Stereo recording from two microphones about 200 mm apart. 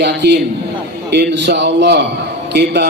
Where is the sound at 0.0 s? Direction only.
60° right (ahead or behind).